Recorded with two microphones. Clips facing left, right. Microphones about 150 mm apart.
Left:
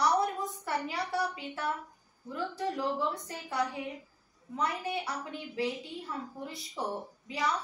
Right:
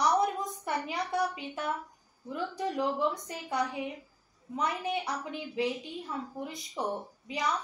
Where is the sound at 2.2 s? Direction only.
20° right (ahead or behind).